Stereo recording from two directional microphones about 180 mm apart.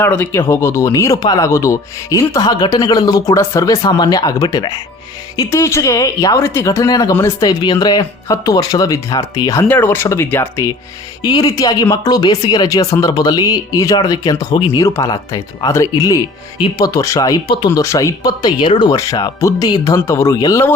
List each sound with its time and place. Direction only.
0.0 s speech: 10° left (ahead or behind)